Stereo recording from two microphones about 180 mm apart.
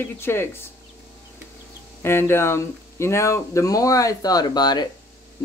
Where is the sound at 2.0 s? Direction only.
15° left (ahead or behind).